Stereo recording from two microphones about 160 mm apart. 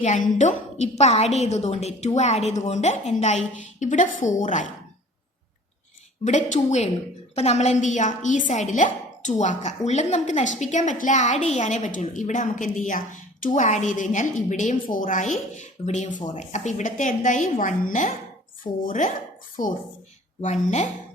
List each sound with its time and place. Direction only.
0.0 s a woman's voice: 50° left (ahead or behind)
6.2 s a woman's voice: 50° left (ahead or behind)
20.4 s a woman's voice: 45° left (ahead or behind)